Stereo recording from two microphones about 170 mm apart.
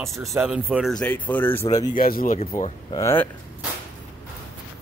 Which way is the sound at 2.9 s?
15° left (ahead or behind).